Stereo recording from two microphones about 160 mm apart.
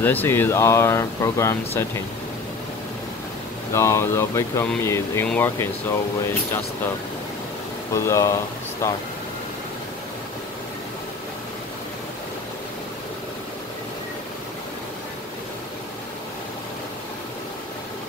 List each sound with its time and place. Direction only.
0.0 s speech: 10° left (ahead or behind)
3.7 s speech: 15° left (ahead or behind)
7.9 s speech: 20° left (ahead or behind)